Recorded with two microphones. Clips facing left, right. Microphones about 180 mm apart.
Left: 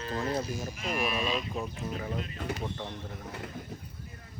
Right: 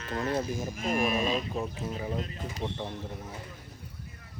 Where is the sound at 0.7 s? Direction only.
45° right (ahead or behind).